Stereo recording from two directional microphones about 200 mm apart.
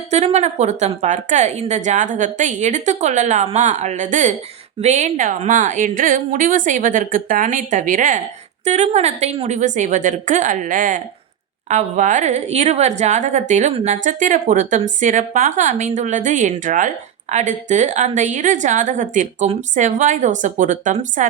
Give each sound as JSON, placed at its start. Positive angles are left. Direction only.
{"t": 0.1, "sound": "speech", "side_deg": -35}